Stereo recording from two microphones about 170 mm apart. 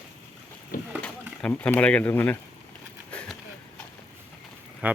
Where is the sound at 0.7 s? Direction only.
55° left (ahead or behind).